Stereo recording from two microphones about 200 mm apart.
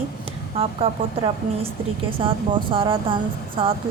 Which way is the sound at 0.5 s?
30° right (ahead or behind).